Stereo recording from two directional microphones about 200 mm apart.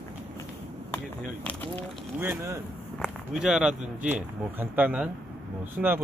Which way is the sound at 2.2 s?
15° right (ahead or behind).